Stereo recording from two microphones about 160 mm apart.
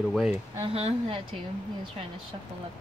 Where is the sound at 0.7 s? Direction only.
35° right (ahead or behind).